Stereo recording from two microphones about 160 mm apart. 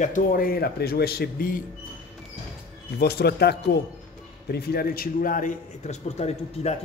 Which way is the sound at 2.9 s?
90° left.